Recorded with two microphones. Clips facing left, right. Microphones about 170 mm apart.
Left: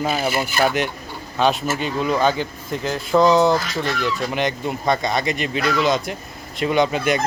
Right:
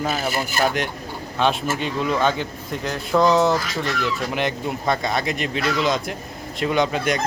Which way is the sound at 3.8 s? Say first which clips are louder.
Left 2 dB; 35° left (ahead or behind).